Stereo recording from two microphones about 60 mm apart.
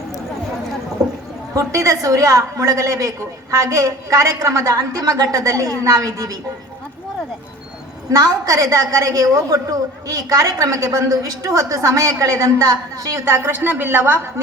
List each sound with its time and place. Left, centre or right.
1.0 s a sound: right
1.5 s a woman's voice: right
8.1 s a woman's voice: right
13.1 s a woman's voice: right